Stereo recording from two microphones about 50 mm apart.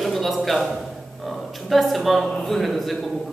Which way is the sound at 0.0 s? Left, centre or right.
Centre.